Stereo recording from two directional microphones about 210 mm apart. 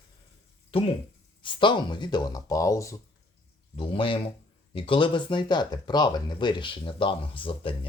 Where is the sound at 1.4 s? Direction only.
20° left (ahead or behind).